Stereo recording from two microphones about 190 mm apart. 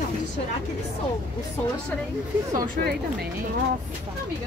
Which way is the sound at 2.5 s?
50° right (ahead or behind).